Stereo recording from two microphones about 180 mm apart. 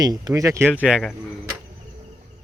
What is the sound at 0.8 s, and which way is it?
Speech, 5° right (ahead or behind).